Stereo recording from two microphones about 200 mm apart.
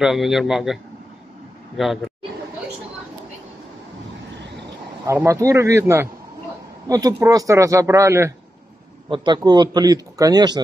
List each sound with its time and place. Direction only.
0.0 s a man's voice: centre (ahead or behind)
1.8 s a man's voice: centre (ahead or behind)
5.0 s a man's voice: 15° right (ahead or behind)